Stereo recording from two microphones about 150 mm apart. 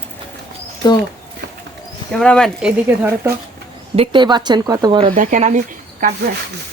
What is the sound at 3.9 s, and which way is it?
Speech, 30° right (ahead or behind).